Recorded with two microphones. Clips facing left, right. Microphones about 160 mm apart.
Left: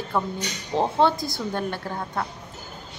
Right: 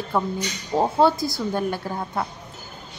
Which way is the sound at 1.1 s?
20° left (ahead or behind).